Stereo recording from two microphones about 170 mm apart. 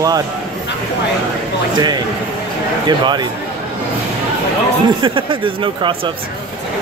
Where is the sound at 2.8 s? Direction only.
25° right (ahead or behind).